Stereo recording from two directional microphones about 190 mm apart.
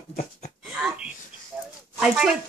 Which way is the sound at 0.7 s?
5° right (ahead or behind).